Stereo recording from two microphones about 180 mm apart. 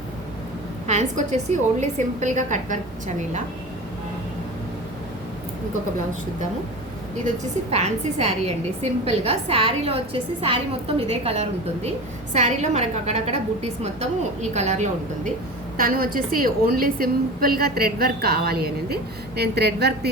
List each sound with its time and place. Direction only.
0.9 s a woman's voice: 40° right (ahead or behind)
7.7 s a woman's voice: 40° right (ahead or behind)
15.8 s a woman's voice: 50° right (ahead or behind)